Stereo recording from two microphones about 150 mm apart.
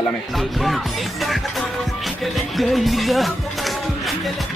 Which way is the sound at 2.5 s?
Centre (ahead or behind).